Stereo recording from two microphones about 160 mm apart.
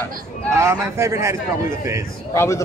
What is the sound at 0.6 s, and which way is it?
Speech, 15° right (ahead or behind).